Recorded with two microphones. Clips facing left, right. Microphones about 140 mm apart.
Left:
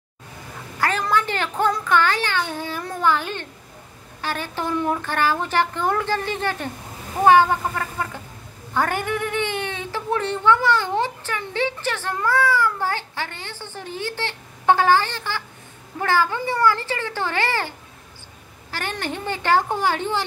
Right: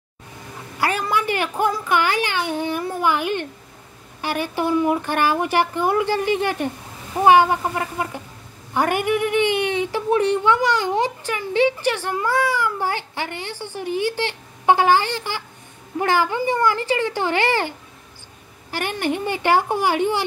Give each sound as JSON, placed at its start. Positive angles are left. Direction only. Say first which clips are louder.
{"t": 0.7, "sound": "a woman's voice", "louder": "even", "side_deg": -10}